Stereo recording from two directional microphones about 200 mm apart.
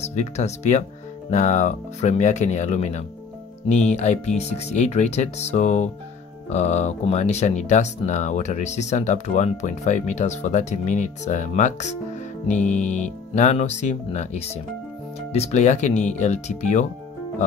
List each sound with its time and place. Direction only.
0.0 s speech: 35° left (ahead or behind)